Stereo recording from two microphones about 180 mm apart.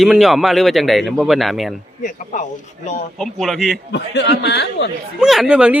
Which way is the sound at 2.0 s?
45° left (ahead or behind).